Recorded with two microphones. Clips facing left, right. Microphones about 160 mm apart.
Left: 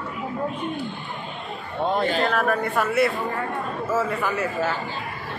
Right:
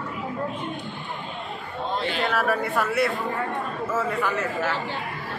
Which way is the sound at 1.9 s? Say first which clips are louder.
Left 4 dB; 45° left (ahead or behind).